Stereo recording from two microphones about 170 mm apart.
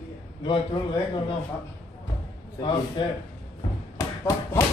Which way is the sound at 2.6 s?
25° left (ahead or behind).